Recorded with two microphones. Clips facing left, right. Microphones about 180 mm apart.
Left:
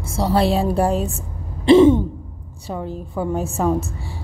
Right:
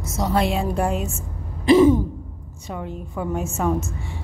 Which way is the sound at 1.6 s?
25° left (ahead or behind).